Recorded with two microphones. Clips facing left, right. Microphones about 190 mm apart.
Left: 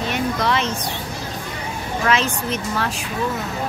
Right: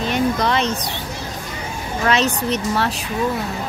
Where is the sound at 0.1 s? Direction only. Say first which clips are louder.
Right 3 dB; 35° right (ahead or behind).